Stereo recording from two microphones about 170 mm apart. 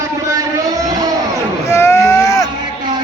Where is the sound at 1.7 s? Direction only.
15° left (ahead or behind).